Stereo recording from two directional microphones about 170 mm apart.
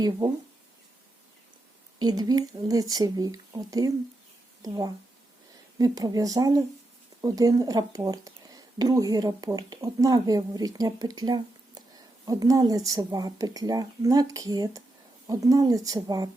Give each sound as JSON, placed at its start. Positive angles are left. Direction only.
{"t": 2.0, "sound": "speech", "side_deg": -25}